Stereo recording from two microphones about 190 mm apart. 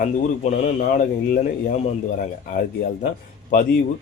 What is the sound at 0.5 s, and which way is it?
Speech, 40° left (ahead or behind).